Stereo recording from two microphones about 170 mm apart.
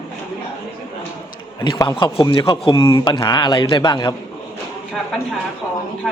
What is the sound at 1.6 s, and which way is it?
Speech, 25° left (ahead or behind).